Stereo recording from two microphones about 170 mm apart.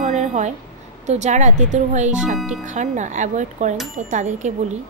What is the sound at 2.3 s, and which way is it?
Speech, 5° right (ahead or behind).